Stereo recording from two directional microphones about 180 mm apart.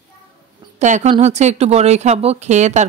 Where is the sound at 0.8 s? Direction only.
40° right (ahead or behind).